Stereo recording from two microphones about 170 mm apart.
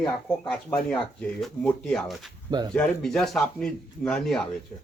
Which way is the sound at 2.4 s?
25° right (ahead or behind).